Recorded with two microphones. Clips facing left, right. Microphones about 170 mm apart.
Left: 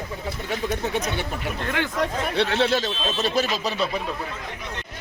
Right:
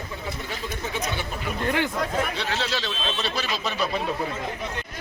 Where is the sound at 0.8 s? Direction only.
65° left (ahead or behind).